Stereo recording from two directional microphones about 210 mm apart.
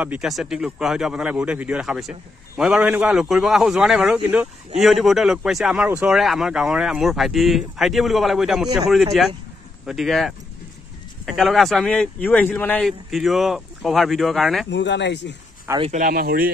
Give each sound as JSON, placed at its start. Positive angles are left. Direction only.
{"t": 0.0, "sound": "speech", "side_deg": -5}
{"t": 14.7, "sound": "speech", "side_deg": 55}
{"t": 15.7, "sound": "speech", "side_deg": -10}
{"t": 16.0, "sound": "speech", "side_deg": -45}